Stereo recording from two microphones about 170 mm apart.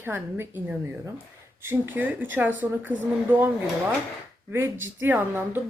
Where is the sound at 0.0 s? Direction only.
15° right (ahead or behind).